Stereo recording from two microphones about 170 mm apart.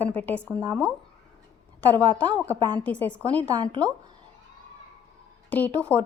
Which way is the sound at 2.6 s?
25° right (ahead or behind).